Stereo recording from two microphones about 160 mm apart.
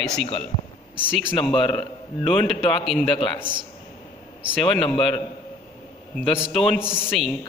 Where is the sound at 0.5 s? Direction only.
30° left (ahead or behind).